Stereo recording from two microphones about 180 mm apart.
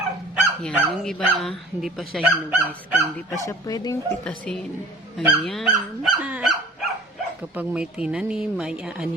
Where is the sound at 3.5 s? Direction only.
20° left (ahead or behind).